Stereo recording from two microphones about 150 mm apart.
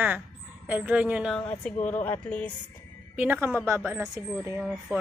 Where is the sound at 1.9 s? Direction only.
10° left (ahead or behind).